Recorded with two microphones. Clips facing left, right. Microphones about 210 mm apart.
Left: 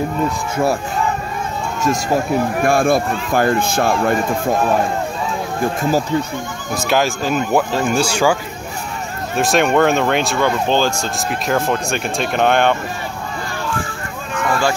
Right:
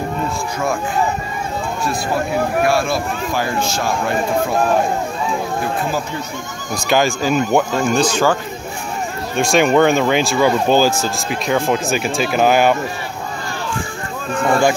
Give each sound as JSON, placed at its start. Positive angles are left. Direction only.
{"t": 2.6, "sound": "speech", "side_deg": 50}
{"t": 5.8, "sound": "speech", "side_deg": 40}
{"t": 6.7, "sound": "speech", "side_deg": 0}
{"t": 9.4, "sound": "speech", "side_deg": 0}
{"t": 14.3, "sound": "a sound", "side_deg": -30}